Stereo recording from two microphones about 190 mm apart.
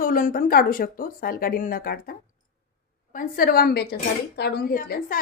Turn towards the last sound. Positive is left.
turn(degrees=50)  # may be behind; listen again after turning